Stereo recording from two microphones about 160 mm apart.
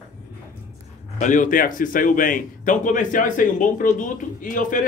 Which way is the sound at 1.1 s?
55° left (ahead or behind).